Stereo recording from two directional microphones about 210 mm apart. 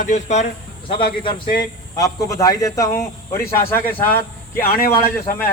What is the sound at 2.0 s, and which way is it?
Speech, 15° left (ahead or behind).